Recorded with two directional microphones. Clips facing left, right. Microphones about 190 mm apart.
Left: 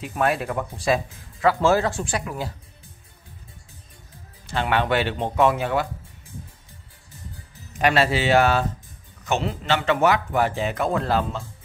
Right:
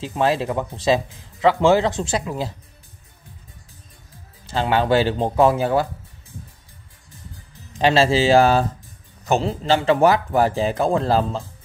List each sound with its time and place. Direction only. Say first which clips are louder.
0.0 s speech: right 3 dB; 25° right (ahead or behind)
4.5 s a man's voice: right 4 dB; 30° right (ahead or behind)
7.8 s a man's voice: right 4 dB; 25° right (ahead or behind)